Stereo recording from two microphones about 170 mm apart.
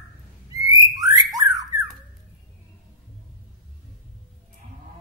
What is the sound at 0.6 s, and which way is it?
Bird, 20° right (ahead or behind).